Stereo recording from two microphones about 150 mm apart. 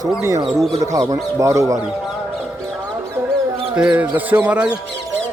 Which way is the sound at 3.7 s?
10° right (ahead or behind).